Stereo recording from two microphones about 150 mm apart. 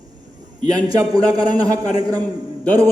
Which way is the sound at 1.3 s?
25° right (ahead or behind).